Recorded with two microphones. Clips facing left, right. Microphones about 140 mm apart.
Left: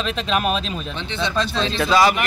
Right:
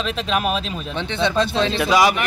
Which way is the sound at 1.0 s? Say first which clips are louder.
Right 4 dB; 60° right (ahead or behind).